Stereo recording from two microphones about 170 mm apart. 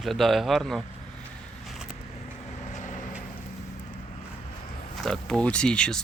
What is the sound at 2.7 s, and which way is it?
Vehicle, 45° left (ahead or behind).